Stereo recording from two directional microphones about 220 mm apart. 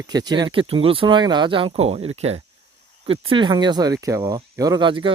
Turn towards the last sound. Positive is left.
turn(degrees=-20)  # may be behind; listen again after turning